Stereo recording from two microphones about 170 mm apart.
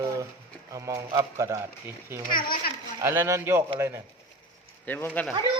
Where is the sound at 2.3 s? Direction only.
60° left (ahead or behind).